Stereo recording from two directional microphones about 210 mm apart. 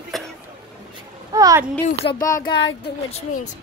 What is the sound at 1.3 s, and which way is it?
Speech, 15° right (ahead or behind).